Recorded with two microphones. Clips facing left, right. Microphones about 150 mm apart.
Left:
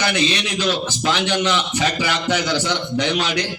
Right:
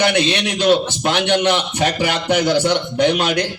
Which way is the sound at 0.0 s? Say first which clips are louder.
Right 4 dB; 60° right (ahead or behind).